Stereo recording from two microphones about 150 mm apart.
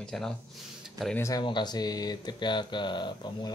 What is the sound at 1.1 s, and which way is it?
Speech, 20° left (ahead or behind).